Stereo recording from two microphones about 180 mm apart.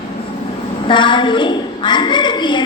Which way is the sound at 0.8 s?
25° left (ahead or behind).